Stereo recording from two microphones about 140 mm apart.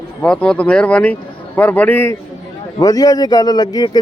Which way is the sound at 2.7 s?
25° left (ahead or behind).